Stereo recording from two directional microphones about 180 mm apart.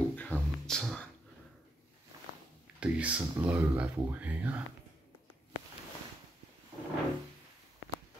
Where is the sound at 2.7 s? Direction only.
5° right (ahead or behind).